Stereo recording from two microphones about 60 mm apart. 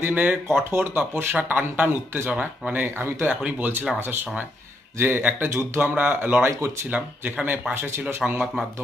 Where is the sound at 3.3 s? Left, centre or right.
Right.